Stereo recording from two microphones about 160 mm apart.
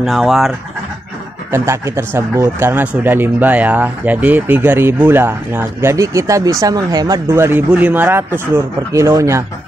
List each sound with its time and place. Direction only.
0.0 s speech: centre (ahead or behind)
1.5 s speech: 15° right (ahead or behind)